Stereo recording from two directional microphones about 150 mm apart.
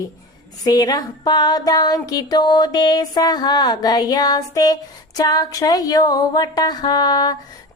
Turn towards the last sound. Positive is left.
turn(degrees=25)  # may be behind; listen again after turning